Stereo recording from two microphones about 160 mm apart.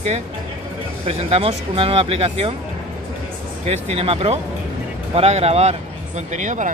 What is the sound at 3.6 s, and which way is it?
Speech, 40° right (ahead or behind).